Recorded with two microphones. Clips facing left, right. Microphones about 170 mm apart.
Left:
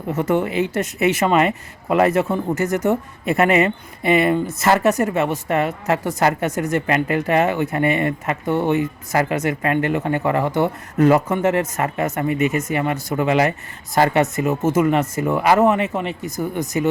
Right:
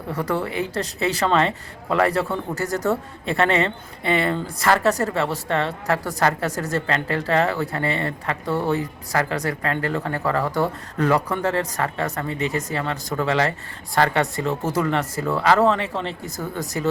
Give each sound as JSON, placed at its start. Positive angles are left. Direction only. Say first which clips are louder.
{"t": 0.1, "sound": "speech", "louder": "left 5 dB", "side_deg": 25}